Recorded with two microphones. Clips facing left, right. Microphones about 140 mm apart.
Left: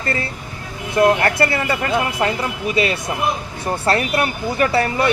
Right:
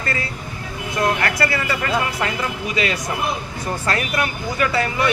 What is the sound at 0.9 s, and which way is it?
Speech, 25° left (ahead or behind).